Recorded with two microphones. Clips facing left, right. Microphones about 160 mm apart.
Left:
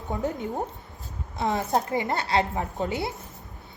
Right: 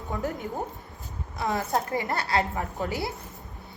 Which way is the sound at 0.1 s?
20° left (ahead or behind).